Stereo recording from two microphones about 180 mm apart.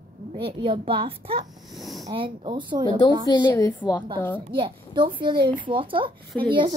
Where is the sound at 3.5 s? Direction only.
15° left (ahead or behind).